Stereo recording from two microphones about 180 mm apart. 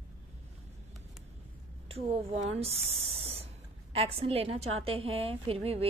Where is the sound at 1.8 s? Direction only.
35° right (ahead or behind).